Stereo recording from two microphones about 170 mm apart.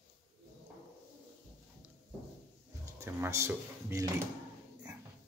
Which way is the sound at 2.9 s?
15° right (ahead or behind).